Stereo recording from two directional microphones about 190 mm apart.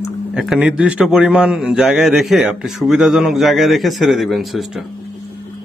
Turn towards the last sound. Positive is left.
turn(degrees=0)  # may be behind; listen again after turning